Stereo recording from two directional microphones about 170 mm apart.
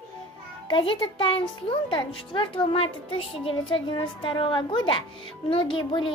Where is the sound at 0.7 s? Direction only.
30° left (ahead or behind).